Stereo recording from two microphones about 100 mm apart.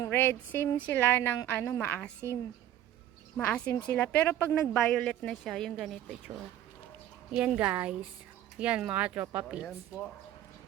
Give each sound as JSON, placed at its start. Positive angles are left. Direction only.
{"t": 0.1, "sound": "speech", "side_deg": 25}
{"t": 1.9, "sound": "speech", "side_deg": 10}
{"t": 3.3, "sound": "speech", "side_deg": 10}
{"t": 4.5, "sound": "a woman's voice", "side_deg": 5}
{"t": 7.3, "sound": "speech", "side_deg": -15}